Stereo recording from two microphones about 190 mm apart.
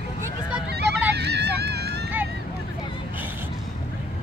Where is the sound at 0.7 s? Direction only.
60° right (ahead or behind).